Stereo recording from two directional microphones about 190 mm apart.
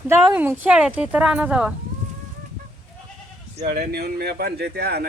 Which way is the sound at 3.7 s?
55° right (ahead or behind).